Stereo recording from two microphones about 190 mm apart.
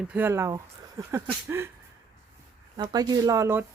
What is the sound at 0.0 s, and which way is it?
Speech, 10° right (ahead or behind).